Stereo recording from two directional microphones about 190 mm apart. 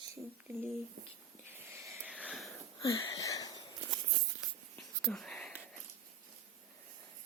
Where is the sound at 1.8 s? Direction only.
15° right (ahead or behind).